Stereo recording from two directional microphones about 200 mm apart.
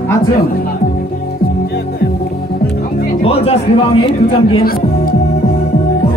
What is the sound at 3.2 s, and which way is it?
Speech, 30° left (ahead or behind).